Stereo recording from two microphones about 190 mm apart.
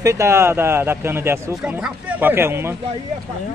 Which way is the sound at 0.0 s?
15° right (ahead or behind).